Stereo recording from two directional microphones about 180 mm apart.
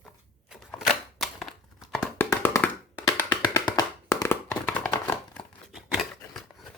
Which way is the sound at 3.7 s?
20° left (ahead or behind).